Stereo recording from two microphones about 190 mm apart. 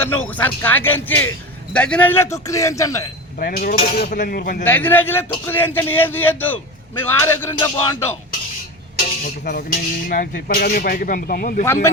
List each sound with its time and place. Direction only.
0.3 s speech: 10° left (ahead or behind)
3.3 s speech: 50° left (ahead or behind)
4.6 s speech: 10° left (ahead or behind)
9.2 s speech: 50° left (ahead or behind)
11.6 s speech: 15° left (ahead or behind)